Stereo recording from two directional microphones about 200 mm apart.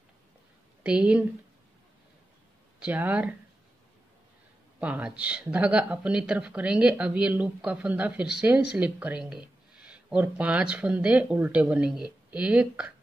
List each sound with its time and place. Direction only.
0.8 s speech: 5° right (ahead or behind)
2.8 s speech: 10° right (ahead or behind)
4.7 s speech: 5° right (ahead or behind)